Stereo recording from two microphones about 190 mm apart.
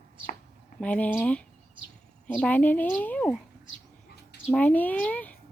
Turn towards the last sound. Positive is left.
turn(degrees=10)  # may be behind; listen again after turning